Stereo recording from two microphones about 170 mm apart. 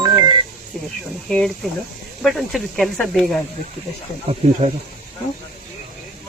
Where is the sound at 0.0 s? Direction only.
25° right (ahead or behind).